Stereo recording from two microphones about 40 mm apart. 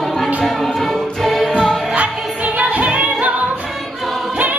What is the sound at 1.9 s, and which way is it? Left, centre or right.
Music, right.